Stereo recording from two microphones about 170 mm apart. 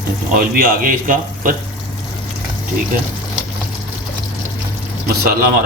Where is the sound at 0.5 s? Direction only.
55° right (ahead or behind).